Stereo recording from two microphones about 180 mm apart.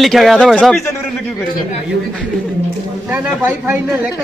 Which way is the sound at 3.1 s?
10° right (ahead or behind).